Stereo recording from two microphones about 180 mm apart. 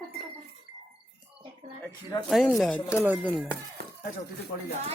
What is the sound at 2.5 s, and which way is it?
Speech, centre (ahead or behind).